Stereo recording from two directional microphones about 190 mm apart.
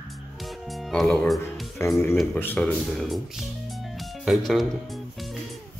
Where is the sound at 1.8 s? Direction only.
15° left (ahead or behind).